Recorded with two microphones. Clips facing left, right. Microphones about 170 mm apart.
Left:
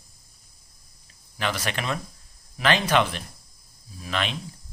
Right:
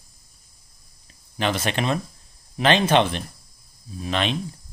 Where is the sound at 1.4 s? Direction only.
25° right (ahead or behind).